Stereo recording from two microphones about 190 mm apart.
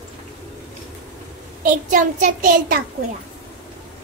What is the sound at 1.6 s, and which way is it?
A child's voice, 40° right (ahead or behind).